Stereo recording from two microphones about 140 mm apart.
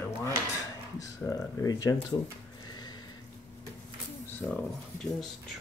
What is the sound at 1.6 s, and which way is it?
Speech, 25° left (ahead or behind).